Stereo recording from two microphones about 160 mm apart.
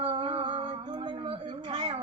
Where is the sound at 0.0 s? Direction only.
30° right (ahead or behind).